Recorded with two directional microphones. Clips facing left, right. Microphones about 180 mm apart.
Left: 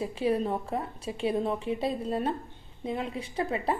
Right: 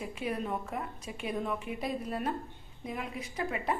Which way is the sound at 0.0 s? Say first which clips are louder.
Left 8 dB; 30° left (ahead or behind).